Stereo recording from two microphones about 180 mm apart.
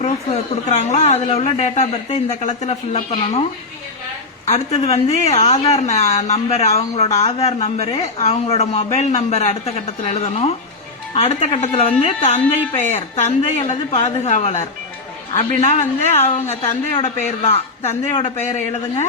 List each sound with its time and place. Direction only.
0.7 s speech: 40° left (ahead or behind)
4.4 s speech: 40° left (ahead or behind)